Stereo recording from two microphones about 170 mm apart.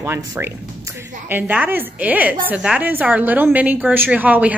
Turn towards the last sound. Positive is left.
turn(degrees=-10)  # may be behind; listen again after turning